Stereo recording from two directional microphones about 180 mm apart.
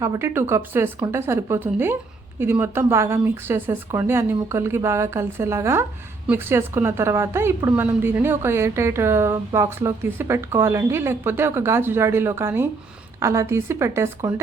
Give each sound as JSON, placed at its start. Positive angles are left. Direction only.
{"t": 0.0, "sound": "a woman's voice", "side_deg": -15}